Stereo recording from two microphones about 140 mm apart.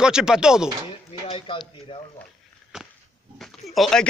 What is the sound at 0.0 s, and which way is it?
Speech, 5° right (ahead or behind).